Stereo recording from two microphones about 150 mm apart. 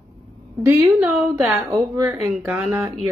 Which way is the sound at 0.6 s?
15° right (ahead or behind).